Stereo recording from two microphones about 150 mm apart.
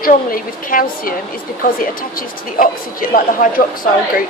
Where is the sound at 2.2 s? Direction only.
70° left (ahead or behind).